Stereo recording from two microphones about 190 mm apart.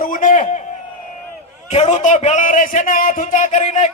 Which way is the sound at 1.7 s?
35° left (ahead or behind).